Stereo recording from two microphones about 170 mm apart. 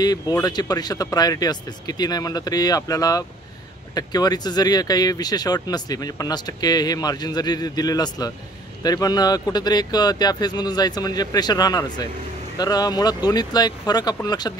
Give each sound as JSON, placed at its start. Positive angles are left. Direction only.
{"t": 0.0, "sound": "speech", "side_deg": 20}